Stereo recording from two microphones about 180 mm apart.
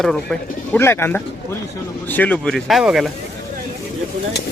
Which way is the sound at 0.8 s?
15° left (ahead or behind).